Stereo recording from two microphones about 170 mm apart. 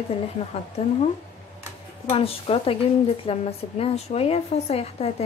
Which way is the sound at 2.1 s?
35° left (ahead or behind).